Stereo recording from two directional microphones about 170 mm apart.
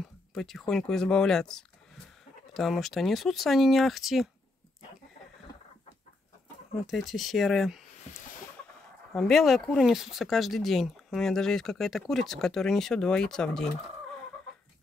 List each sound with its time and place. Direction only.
0.3 s speech: centre (ahead or behind)
6.9 s speech: centre (ahead or behind)
8.1 s fowl: 45° left (ahead or behind)
9.1 s speech: centre (ahead or behind)